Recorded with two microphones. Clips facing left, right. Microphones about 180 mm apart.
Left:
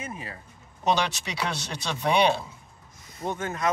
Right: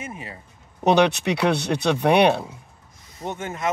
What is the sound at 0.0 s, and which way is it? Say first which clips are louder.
Speech: right 2 dB; 25° right (ahead or behind).